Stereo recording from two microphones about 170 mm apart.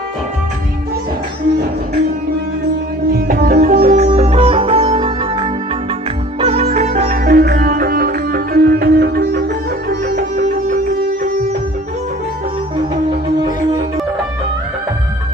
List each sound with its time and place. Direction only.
3.1 s music: 65° right (ahead or behind)
3.9 s music: 40° right (ahead or behind)
6.4 s sitar: 40° right (ahead or behind); by 9.5 s 65° right (ahead or behind)
10.1 s music: 50° right (ahead or behind)